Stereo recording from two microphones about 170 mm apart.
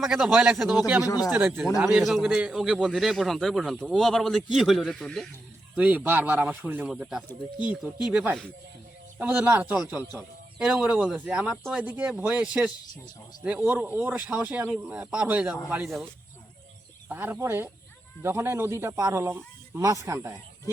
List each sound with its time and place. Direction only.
0.0 s a man's voice: centre (ahead or behind)
1.0 s speech: 20° left (ahead or behind)
1.3 s a man's voice: 10° right (ahead or behind)
5.7 s a man's voice: 10° right (ahead or behind)
17.1 s speech: 10° right (ahead or behind)